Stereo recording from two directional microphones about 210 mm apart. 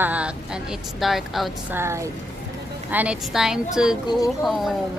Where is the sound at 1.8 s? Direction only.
15° right (ahead or behind).